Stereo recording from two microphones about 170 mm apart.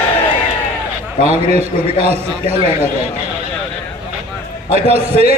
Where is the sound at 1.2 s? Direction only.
40° right (ahead or behind).